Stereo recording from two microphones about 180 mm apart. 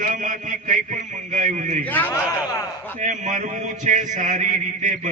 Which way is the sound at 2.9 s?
45° right (ahead or behind).